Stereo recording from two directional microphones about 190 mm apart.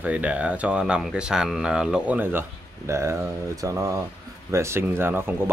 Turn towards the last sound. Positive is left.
turn(degrees=-10)  # may be behind; listen again after turning